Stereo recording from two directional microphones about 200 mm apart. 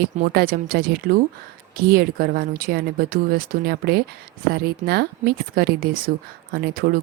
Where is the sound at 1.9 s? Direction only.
50° right (ahead or behind).